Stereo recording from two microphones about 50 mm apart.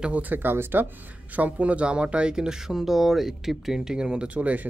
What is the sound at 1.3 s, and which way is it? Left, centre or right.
Speech, right.